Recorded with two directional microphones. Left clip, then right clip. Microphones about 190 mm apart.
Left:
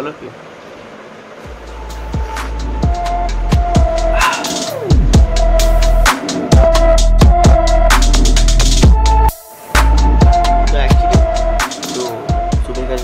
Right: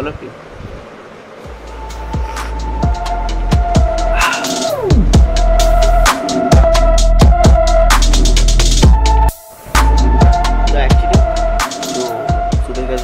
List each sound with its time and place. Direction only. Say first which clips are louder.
2.3 s music: even; centre (ahead or behind)